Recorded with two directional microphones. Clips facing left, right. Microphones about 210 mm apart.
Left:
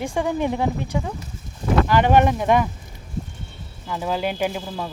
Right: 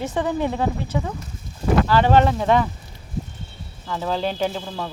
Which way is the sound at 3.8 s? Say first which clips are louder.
Even; 10° left (ahead or behind).